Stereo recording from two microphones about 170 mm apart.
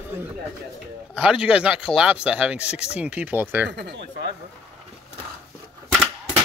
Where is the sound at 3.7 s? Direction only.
85° right.